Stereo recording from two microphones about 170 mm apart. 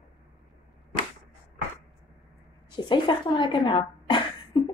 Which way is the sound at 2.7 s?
30° left (ahead or behind).